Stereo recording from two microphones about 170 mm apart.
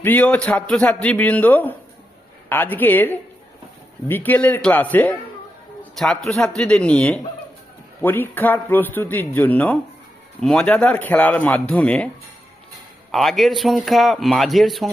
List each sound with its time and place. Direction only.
0.0 s a man's voice: 10° left (ahead or behind)
13.1 s a man's voice: centre (ahead or behind)